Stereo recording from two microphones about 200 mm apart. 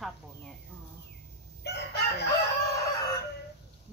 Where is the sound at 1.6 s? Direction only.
55° left (ahead or behind).